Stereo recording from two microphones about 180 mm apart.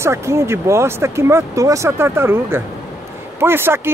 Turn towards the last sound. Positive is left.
turn(degrees=-15)  # may be behind; listen again after turning